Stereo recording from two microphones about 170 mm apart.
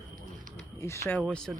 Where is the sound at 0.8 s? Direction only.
15° left (ahead or behind).